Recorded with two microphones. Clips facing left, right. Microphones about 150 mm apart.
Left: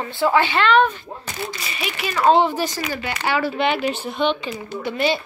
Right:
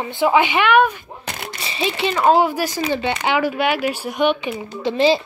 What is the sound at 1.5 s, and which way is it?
Speech, 30° right (ahead or behind).